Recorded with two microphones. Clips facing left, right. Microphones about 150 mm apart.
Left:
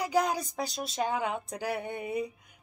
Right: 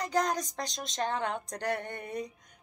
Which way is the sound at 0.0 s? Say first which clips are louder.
Left 2 dB; 10° left (ahead or behind).